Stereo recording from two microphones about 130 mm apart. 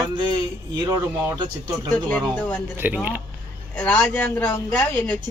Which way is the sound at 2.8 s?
15° right (ahead or behind).